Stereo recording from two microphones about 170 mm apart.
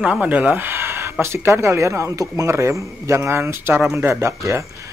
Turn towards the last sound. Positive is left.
turn(degrees=-15)  # may be behind; listen again after turning